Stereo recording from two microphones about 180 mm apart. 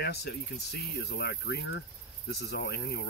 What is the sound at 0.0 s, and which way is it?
Speech, 60° left (ahead or behind).